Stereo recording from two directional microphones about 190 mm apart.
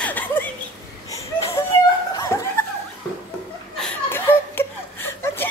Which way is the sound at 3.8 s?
10° left (ahead or behind).